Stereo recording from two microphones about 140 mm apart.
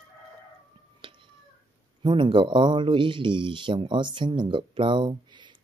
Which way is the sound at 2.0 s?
35° right (ahead or behind).